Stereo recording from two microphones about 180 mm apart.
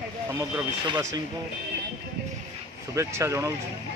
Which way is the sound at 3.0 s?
15° right (ahead or behind).